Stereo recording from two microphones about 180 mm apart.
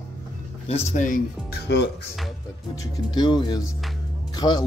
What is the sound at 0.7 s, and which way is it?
Speech, 35° left (ahead or behind).